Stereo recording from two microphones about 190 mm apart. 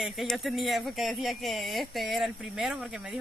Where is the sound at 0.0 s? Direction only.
Centre (ahead or behind).